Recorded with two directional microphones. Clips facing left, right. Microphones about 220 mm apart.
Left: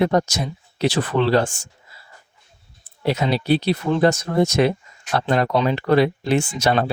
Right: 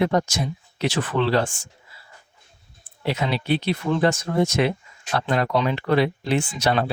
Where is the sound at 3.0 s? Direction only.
40° left (ahead or behind).